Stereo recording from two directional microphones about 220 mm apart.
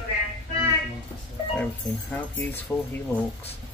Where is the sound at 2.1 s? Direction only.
10° left (ahead or behind).